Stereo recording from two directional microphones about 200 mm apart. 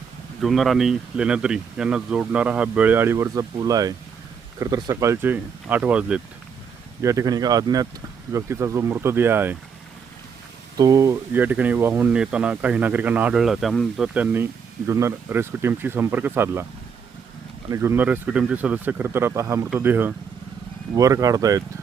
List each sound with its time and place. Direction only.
0.4 s speech: centre (ahead or behind)
10.8 s speech: 15° right (ahead or behind)
17.7 s speech: 10° right (ahead or behind)